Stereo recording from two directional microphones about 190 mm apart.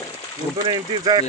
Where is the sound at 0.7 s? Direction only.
20° right (ahead or behind).